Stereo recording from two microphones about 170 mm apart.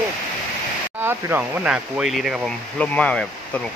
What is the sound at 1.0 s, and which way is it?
Speech, 15° right (ahead or behind).